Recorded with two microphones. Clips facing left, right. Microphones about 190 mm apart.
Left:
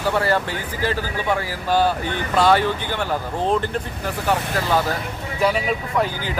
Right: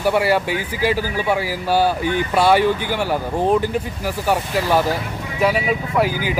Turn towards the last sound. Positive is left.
turn(degrees=-10)  # may be behind; listen again after turning